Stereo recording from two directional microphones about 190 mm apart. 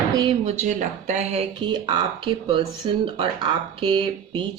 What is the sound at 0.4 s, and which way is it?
Speech, 35° right (ahead or behind).